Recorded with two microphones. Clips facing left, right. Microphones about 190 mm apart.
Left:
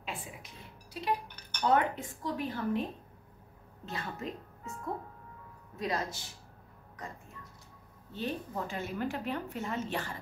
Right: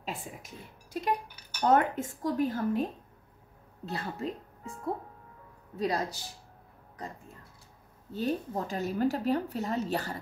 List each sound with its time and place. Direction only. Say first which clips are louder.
0.0 s speech: right 3 dB; 40° right (ahead or behind)
1.2 s cutlery: left 1 dB; 5° right (ahead or behind)
1.6 s speech: right 3 dB; 45° right (ahead or behind)
8.1 s speech: right 5 dB; 40° right (ahead or behind)